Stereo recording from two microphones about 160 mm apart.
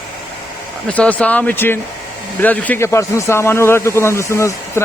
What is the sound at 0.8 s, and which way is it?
A man's voice, 10° left (ahead or behind).